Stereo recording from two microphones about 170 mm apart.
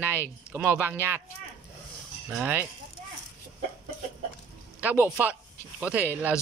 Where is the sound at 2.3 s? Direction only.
10° right (ahead or behind).